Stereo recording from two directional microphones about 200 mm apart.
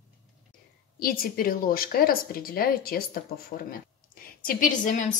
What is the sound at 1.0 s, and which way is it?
A woman's voice, 45° left (ahead or behind).